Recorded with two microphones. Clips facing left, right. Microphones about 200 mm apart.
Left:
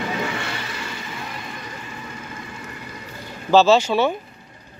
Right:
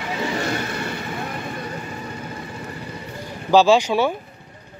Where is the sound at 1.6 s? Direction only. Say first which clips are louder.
Right 5 dB; 35° right (ahead or behind).